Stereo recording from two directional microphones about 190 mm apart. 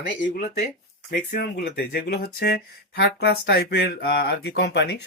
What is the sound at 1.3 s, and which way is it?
Speech, 50° left (ahead or behind).